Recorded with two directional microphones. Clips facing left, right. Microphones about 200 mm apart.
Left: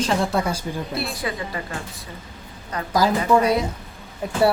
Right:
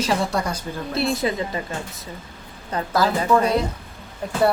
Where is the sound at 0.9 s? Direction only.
20° right (ahead or behind).